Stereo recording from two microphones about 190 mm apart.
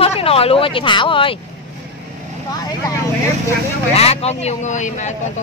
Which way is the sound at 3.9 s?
35° left (ahead or behind).